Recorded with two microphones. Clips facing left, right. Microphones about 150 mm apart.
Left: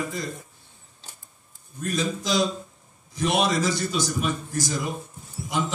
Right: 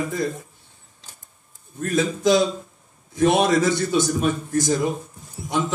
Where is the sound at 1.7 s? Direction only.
55° right (ahead or behind).